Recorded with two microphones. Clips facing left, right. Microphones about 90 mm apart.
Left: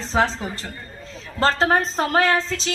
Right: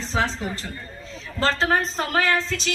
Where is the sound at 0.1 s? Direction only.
45° left (ahead or behind).